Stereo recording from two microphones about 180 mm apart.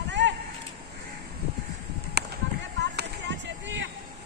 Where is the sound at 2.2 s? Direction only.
65° right (ahead or behind).